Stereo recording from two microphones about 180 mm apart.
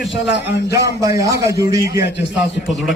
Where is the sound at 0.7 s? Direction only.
15° right (ahead or behind).